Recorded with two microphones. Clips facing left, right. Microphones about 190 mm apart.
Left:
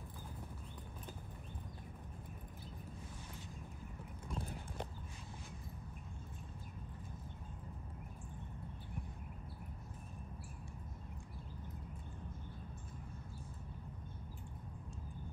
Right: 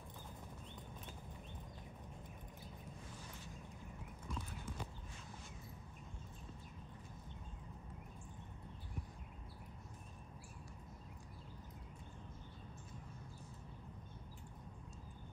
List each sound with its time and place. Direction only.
4.3 s clip-clop: 55° left (ahead or behind)